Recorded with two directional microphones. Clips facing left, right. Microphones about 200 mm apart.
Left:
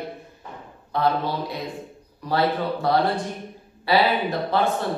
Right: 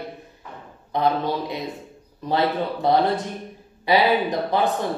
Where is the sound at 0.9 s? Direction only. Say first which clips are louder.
Right 1 dB; 20° right (ahead or behind).